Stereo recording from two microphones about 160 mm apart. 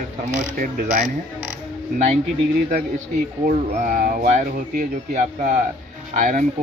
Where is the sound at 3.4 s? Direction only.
55° right (ahead or behind).